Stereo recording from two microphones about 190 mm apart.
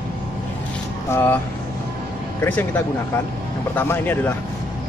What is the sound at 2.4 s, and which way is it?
Speech, 10° left (ahead or behind).